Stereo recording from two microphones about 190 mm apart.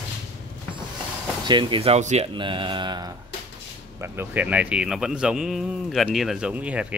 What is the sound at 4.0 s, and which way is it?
Speech, 10° right (ahead or behind).